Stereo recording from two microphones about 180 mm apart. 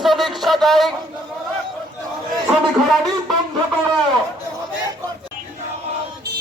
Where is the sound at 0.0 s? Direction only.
Centre (ahead or behind).